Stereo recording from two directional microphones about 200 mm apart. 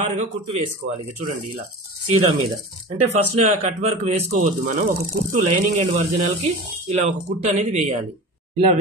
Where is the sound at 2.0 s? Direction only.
90° right.